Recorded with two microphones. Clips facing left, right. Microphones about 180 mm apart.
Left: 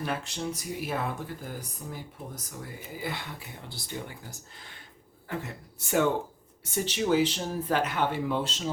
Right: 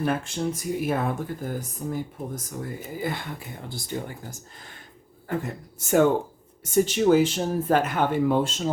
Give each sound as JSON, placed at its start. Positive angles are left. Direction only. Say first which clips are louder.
{"t": 0.0, "sound": "speech", "louder": "right 7 dB", "side_deg": -50}